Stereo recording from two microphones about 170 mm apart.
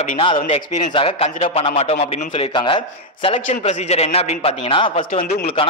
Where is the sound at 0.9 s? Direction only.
35° left (ahead or behind).